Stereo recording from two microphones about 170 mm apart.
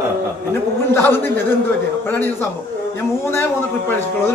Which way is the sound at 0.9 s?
15° left (ahead or behind).